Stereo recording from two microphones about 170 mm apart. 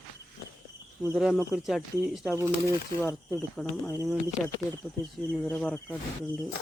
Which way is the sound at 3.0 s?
15° left (ahead or behind).